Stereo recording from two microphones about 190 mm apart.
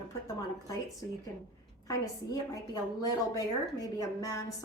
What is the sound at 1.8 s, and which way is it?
A woman's voice, 20° left (ahead or behind).